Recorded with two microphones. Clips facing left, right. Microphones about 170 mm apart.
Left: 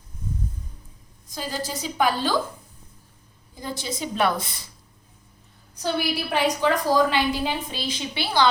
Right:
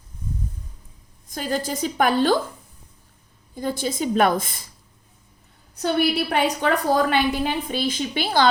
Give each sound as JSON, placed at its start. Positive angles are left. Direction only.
{"t": 1.3, "sound": "a woman's voice", "side_deg": -50}
{"t": 3.5, "sound": "a woman's voice", "side_deg": -50}
{"t": 5.7, "sound": "a woman's voice", "side_deg": -60}